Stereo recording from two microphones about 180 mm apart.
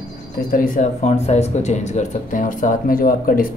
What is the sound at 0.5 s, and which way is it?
Speech, 50° left (ahead or behind).